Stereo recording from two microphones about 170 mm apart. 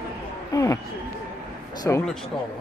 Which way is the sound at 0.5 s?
20° left (ahead or behind).